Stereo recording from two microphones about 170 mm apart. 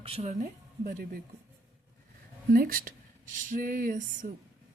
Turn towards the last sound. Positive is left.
turn(degrees=-50)  # may be behind; listen again after turning